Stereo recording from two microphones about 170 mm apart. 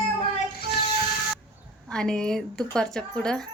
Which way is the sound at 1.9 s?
5° left (ahead or behind).